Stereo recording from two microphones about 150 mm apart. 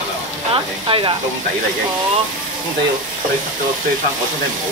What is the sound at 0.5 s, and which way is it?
Speech, 35° right (ahead or behind).